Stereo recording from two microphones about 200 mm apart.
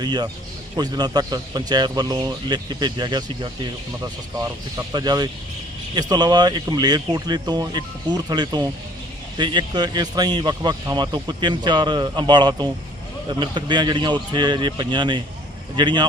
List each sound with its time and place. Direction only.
0.0 s a man's voice: 20° right (ahead or behind)